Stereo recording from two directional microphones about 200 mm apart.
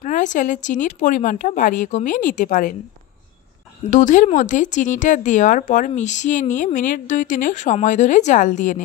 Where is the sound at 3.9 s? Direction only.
40° left (ahead or behind).